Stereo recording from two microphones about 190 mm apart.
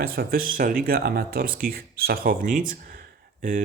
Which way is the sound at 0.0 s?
50° right (ahead or behind).